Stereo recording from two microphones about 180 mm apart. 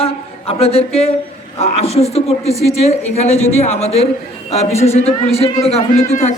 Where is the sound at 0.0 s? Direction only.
35° left (ahead or behind).